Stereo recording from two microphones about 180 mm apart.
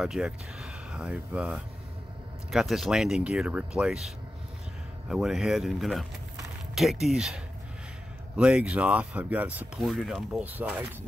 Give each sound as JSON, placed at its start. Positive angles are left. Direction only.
{"t": 0.0, "sound": "speech", "side_deg": 0}
{"t": 5.1, "sound": "speech", "side_deg": 0}